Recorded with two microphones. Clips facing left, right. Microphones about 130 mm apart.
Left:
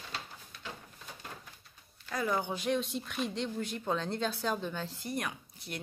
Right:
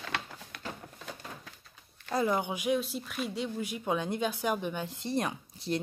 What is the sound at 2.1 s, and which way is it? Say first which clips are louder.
Speech: right 4 dB; 25° right (ahead or behind).